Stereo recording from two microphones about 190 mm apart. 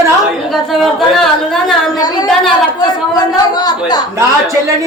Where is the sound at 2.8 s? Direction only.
20° left (ahead or behind).